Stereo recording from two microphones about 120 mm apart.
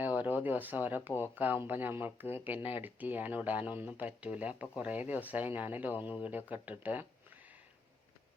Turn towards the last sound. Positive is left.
turn(degrees=-15)  # may be behind; listen again after turning